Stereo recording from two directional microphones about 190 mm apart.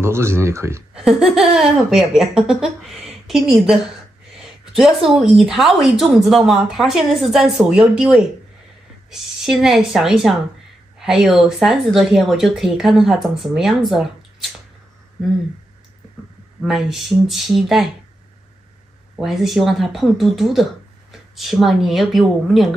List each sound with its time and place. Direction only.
0.0 s speech: 15° right (ahead or behind)
0.9 s speech: centre (ahead or behind)
4.4 s a sound: centre (ahead or behind)
5.4 s speech: centre (ahead or behind)
16.6 s speech: centre (ahead or behind)
19.1 s speech: centre (ahead or behind)